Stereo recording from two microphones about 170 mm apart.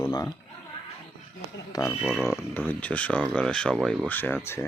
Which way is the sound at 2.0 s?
Centre (ahead or behind).